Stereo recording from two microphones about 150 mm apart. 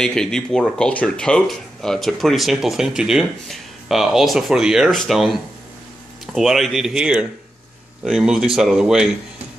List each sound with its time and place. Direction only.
0.0 s speech: 5° left (ahead or behind)